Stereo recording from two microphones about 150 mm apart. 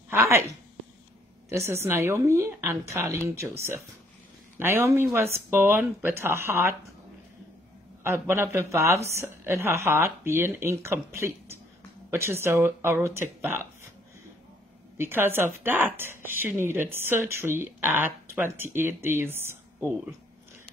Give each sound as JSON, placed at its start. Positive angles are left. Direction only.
{"t": 0.1, "sound": "a woman's voice", "side_deg": -20}
{"t": 8.0, "sound": "a woman's voice", "side_deg": -15}
{"t": 15.0, "sound": "a woman's voice", "side_deg": -15}